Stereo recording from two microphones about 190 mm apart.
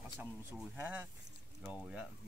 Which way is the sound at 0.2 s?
10° right (ahead or behind).